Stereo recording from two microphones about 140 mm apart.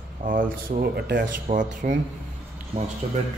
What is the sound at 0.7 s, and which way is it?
Speech, 65° right (ahead or behind).